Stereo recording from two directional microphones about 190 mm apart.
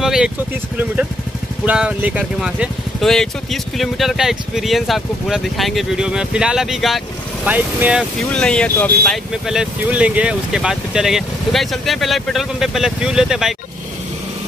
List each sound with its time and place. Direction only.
0.0 s vehicle: centre (ahead or behind)
1.7 s speech: 5° right (ahead or behind)